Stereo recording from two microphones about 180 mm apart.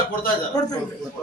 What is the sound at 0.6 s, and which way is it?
Speech, 20° left (ahead or behind).